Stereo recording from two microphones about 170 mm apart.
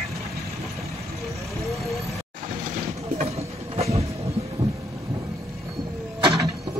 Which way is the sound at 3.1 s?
40° right (ahead or behind).